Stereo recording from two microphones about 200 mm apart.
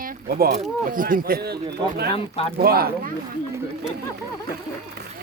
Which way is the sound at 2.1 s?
30° left (ahead or behind).